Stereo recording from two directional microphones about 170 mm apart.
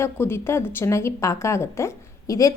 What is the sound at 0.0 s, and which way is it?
Speech, 15° left (ahead or behind).